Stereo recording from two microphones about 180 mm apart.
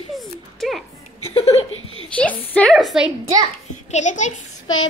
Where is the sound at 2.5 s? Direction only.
5° left (ahead or behind).